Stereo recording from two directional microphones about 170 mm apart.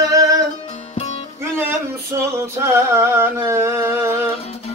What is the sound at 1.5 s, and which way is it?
Male singing, 15° right (ahead or behind).